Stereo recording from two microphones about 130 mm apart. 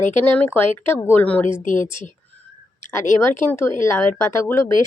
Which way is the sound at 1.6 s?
80° left.